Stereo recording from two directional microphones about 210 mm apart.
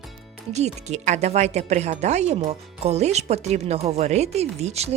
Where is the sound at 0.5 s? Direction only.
30° right (ahead or behind).